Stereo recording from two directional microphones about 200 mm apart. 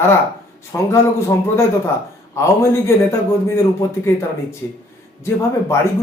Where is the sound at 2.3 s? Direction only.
15° left (ahead or behind).